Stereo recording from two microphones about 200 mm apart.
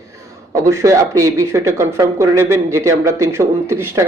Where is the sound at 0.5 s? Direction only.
15° right (ahead or behind).